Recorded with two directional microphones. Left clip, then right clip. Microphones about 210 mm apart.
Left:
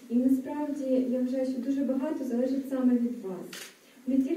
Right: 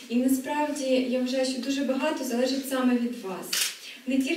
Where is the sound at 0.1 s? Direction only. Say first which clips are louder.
Right 2 dB; 10° left (ahead or behind).